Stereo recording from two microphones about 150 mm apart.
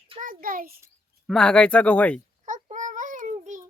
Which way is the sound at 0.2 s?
65° right (ahead or behind).